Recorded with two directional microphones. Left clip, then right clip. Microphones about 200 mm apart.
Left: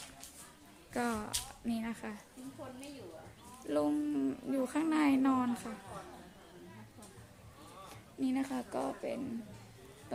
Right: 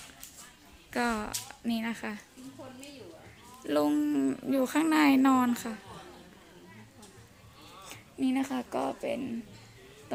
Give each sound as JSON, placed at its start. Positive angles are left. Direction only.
{"t": 0.9, "sound": "speech", "side_deg": -30}
{"t": 3.7, "sound": "speech", "side_deg": -40}
{"t": 8.2, "sound": "speech", "side_deg": -35}